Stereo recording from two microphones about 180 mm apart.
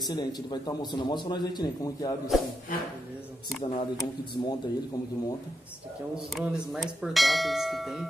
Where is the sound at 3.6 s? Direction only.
25° left (ahead or behind).